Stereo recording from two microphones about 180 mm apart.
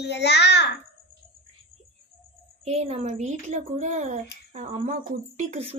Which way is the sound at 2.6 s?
35° right (ahead or behind).